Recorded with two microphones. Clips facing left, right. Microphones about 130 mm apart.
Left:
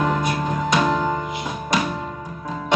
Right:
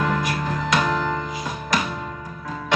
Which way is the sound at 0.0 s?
25° left (ahead or behind).